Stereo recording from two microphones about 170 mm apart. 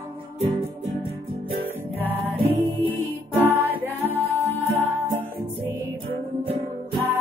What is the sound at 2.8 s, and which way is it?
Music, 10° right (ahead or behind).